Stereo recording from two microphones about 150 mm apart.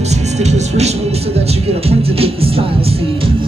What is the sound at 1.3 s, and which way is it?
Speech, 40° right (ahead or behind).